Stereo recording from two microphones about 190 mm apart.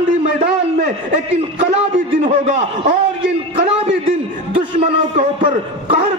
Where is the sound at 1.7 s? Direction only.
35° right (ahead or behind).